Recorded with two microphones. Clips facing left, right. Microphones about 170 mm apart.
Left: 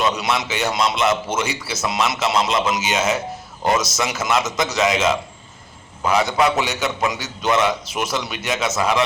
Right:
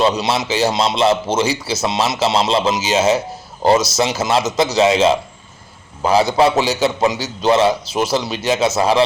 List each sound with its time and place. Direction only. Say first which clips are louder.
0.0 s a man's voice: right 4 dB; 30° right (ahead or behind)